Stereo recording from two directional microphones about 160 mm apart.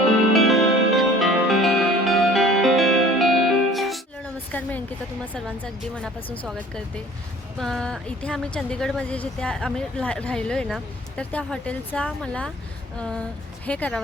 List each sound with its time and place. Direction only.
0.3 s music: centre (ahead or behind)
4.5 s a sound: 10° left (ahead or behind)
6.4 s a woman's voice: 5° left (ahead or behind)